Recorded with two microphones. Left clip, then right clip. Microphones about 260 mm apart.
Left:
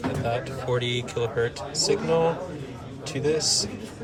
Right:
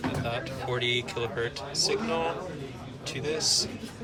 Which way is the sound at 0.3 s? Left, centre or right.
Centre.